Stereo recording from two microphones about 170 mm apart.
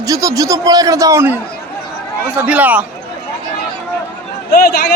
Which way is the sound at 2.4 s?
10° right (ahead or behind).